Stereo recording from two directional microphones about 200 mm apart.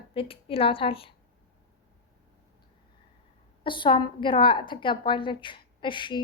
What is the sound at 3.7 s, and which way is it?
A woman's voice, 25° left (ahead or behind).